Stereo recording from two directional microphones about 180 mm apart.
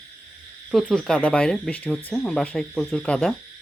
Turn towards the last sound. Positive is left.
turn(degrees=5)  # may be behind; listen again after turning